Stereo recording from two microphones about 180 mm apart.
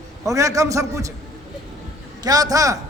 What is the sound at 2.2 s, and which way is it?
Speech, 20° right (ahead or behind).